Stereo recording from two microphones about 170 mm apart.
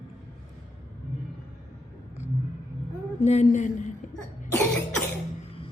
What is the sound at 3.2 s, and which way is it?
Speech, 45° left (ahead or behind).